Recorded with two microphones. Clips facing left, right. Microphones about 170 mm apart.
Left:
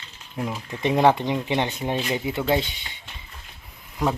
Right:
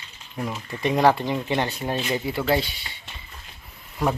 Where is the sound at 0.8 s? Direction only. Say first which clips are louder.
Left 1 dB; 20° left (ahead or behind).